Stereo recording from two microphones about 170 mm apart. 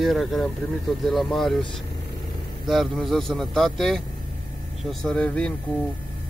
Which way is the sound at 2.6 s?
Centre (ahead or behind).